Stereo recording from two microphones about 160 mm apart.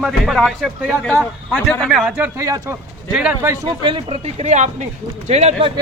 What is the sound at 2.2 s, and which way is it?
Speech, 15° right (ahead or behind).